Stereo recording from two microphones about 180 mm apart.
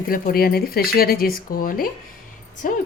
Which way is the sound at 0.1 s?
55° left (ahead or behind).